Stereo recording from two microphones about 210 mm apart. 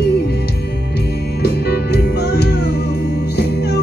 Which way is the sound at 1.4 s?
50° left (ahead or behind).